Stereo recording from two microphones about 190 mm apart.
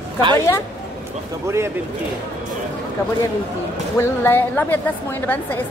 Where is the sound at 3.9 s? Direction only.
10° left (ahead or behind).